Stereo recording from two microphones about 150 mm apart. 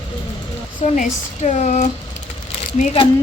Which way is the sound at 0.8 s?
45° left (ahead or behind).